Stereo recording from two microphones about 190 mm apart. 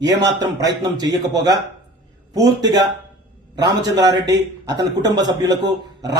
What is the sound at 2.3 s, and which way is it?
A man's voice, 20° right (ahead or behind).